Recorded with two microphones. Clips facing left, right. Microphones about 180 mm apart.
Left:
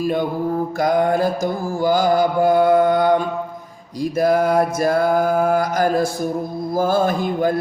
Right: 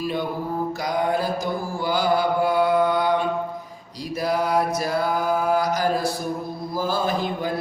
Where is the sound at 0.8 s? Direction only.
50° left (ahead or behind).